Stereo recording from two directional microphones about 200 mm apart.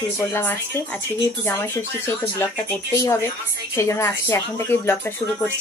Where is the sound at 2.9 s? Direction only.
15° left (ahead or behind).